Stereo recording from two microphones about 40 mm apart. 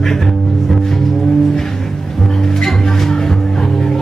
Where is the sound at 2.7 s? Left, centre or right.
Centre.